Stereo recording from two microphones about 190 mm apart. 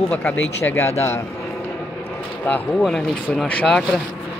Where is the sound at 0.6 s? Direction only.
10° left (ahead or behind).